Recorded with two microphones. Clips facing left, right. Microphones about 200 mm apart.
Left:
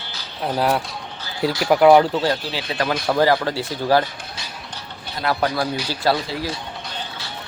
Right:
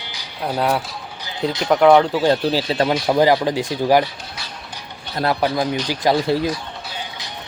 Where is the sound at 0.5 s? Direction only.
Centre (ahead or behind).